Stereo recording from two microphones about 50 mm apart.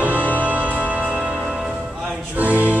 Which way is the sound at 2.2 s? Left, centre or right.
Right.